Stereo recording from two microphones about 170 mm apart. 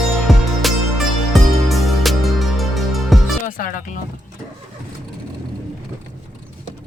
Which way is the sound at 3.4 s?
55° left (ahead or behind).